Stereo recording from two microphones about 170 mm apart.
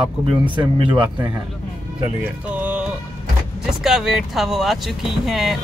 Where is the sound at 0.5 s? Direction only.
30° right (ahead or behind).